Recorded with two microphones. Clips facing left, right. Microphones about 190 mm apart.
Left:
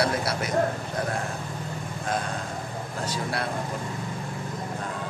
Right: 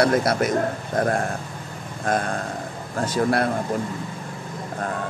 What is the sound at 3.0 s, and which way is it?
Speech, 50° right (ahead or behind).